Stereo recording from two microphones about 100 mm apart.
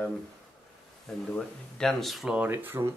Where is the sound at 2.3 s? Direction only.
15° right (ahead or behind).